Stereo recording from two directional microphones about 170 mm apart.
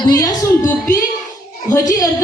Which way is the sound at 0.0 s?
20° left (ahead or behind).